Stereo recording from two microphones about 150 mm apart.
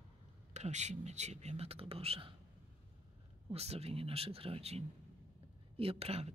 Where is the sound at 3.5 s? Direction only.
45° right (ahead or behind).